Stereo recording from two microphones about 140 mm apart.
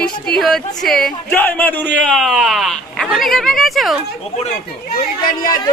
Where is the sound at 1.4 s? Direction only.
15° left (ahead or behind).